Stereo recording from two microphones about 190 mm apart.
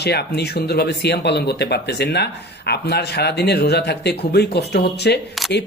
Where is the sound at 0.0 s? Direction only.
60° left (ahead or behind).